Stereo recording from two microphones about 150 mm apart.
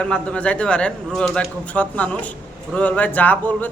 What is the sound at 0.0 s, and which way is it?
A man's voice, 10° left (ahead or behind).